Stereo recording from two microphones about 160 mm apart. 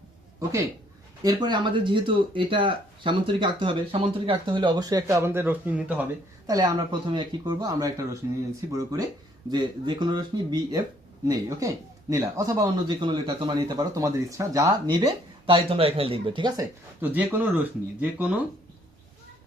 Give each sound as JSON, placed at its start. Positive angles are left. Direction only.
{"t": 1.2, "sound": "speech", "side_deg": -25}
{"t": 6.5, "sound": "speech", "side_deg": -25}
{"t": 17.0, "sound": "speech", "side_deg": -10}